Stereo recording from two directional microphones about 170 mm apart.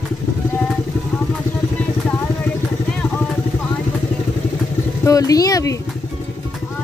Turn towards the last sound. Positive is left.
turn(degrees=20)  # may be behind; listen again after turning